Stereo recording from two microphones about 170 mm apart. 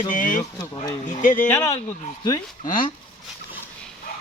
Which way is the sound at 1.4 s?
15° left (ahead or behind).